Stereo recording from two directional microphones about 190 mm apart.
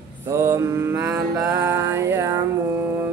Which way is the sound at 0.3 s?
15° right (ahead or behind).